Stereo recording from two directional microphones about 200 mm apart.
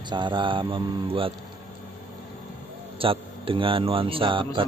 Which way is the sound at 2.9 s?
25° right (ahead or behind).